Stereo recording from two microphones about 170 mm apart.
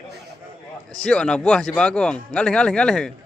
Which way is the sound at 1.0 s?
5° left (ahead or behind).